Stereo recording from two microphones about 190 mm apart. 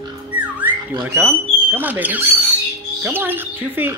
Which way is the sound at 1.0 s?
10° right (ahead or behind).